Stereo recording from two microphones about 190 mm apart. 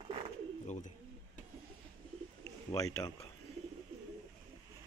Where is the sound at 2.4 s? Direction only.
20° left (ahead or behind).